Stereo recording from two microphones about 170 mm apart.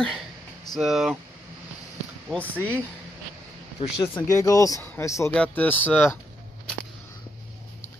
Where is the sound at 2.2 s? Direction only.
10° left (ahead or behind).